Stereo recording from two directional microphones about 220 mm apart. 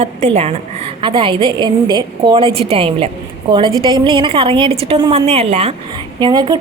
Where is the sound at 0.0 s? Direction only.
30° right (ahead or behind).